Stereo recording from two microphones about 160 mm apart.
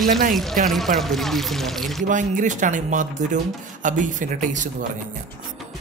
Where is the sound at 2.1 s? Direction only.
55° right (ahead or behind).